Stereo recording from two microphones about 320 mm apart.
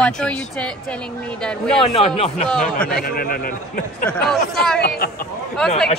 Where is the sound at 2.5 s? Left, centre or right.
Centre.